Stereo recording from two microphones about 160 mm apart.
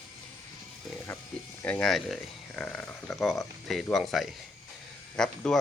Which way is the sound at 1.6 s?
5° left (ahead or behind).